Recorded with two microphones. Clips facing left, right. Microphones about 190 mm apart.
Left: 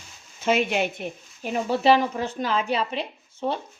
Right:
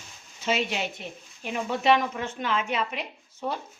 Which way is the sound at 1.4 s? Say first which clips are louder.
Left 4 dB; 35° left (ahead or behind).